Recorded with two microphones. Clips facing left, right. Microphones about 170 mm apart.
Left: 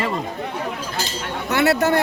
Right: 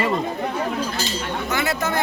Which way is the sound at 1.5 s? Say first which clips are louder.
Left 8 dB; 70° left (ahead or behind).